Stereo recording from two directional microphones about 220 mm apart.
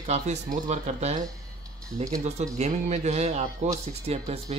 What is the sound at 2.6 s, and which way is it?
A man's voice, 30° right (ahead or behind).